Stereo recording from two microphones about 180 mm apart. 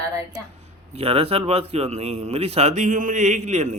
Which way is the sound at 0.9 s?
35° right (ahead or behind).